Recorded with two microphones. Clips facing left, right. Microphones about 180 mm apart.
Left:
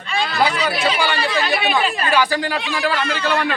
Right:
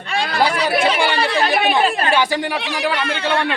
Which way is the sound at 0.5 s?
55° right (ahead or behind).